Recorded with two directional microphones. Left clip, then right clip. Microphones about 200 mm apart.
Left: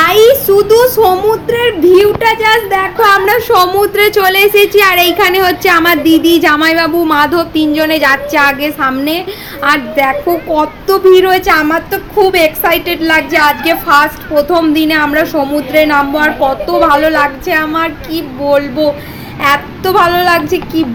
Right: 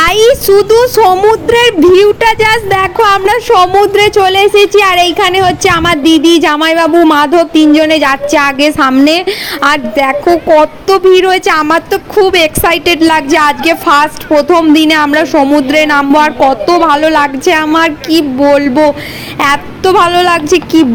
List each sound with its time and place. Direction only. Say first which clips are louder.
0.0 s a woman's voice: even; 45° right (ahead or behind)